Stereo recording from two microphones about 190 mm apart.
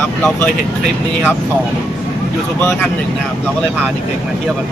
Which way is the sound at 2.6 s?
10° left (ahead or behind).